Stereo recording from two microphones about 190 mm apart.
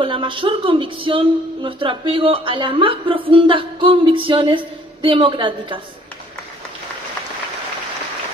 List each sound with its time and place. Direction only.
0.0 s speech: 25° right (ahead or behind)